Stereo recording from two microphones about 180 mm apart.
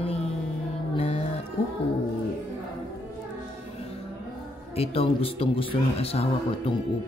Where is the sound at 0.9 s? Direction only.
35° left (ahead or behind).